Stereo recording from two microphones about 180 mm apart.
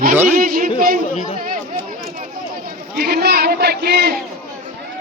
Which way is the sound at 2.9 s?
60° right (ahead or behind).